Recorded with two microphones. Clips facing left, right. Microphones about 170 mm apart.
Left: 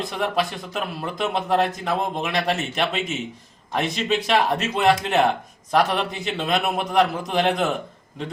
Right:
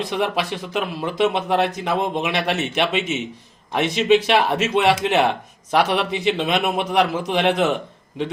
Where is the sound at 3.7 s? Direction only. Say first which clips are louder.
Right 6 dB; centre (ahead or behind).